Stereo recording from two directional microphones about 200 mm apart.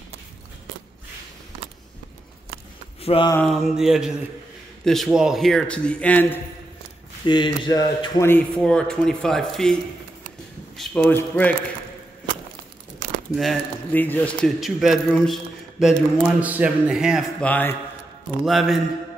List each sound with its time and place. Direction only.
3.0 s a sound: 30° left (ahead or behind)
3.4 s speech: centre (ahead or behind)
7.2 s speech: 20° left (ahead or behind); by 9.8 s 5° left (ahead or behind)
10.8 s speech: 5° left (ahead or behind)
13.3 s speech: centre (ahead or behind)
17.5 s speech: 10° left (ahead or behind)